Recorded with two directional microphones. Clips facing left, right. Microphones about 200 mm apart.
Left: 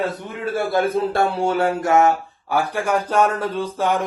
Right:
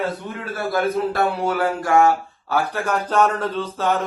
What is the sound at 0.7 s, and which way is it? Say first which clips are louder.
Speech: even; 30° left (ahead or behind).